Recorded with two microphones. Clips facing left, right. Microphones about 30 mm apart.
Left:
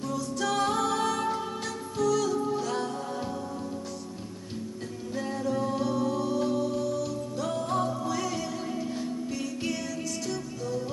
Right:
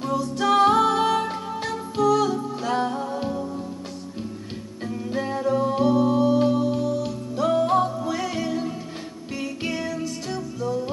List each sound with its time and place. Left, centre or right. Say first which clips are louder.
0.0 s music: right 7 dB; right
4.8 s music: right 9 dB; right
10.3 s music: right 5 dB; centre